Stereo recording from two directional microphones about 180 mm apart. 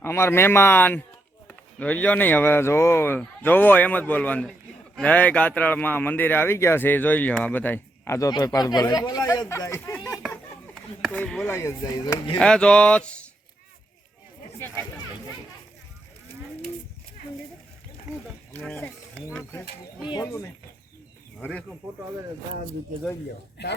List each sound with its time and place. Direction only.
0.0 s a man's voice: 15° left (ahead or behind)
11.5 s a man's voice: 20° left (ahead or behind)
12.4 s speech: 5° left (ahead or behind)
18.5 s a man's voice: 10° left (ahead or behind)
21.3 s speech: 5° left (ahead or behind)